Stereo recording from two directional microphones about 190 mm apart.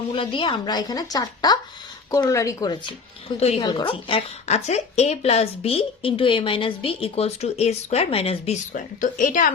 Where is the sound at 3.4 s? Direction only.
30° left (ahead or behind); by 9.5 s 45° left (ahead or behind).